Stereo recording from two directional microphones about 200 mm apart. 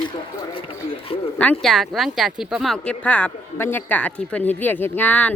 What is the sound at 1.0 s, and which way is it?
Speech, 30° left (ahead or behind).